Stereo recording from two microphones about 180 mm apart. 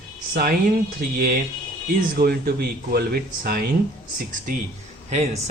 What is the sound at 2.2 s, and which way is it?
Speech, 60° right (ahead or behind).